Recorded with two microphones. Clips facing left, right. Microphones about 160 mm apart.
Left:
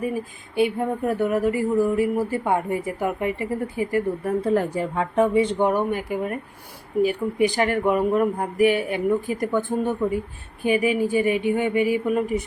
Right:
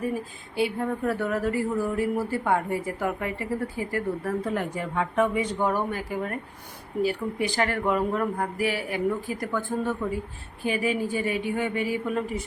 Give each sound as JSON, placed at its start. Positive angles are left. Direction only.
{"t": 0.0, "sound": "speech", "side_deg": 15}
{"t": 4.4, "sound": "speech", "side_deg": 35}